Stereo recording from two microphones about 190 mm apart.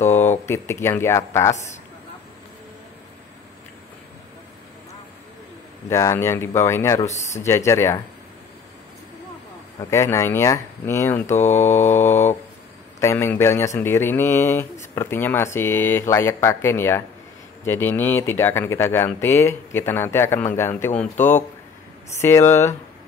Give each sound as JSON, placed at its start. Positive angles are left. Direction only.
{"t": 0.0, "sound": "speech", "side_deg": 10}
{"t": 5.9, "sound": "speech", "side_deg": 15}
{"t": 7.0, "sound": "speech", "side_deg": 35}
{"t": 7.4, "sound": "speech", "side_deg": 15}
{"t": 9.8, "sound": "speech", "side_deg": 15}